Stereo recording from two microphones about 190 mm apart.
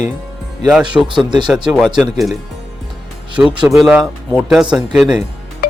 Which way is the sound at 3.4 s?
10° right (ahead or behind).